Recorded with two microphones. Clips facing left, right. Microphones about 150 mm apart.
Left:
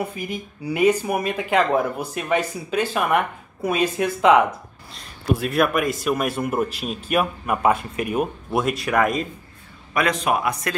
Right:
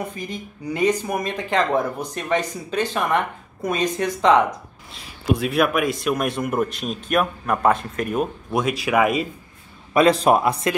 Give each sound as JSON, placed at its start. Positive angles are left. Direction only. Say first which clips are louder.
{"t": 0.0, "sound": "speech", "louder": "left 2 dB", "side_deg": 10}
{"t": 4.9, "sound": "a man's voice", "louder": "right 1 dB", "side_deg": -5}
{"t": 9.9, "sound": "a man's voice", "louder": "right 6 dB", "side_deg": -30}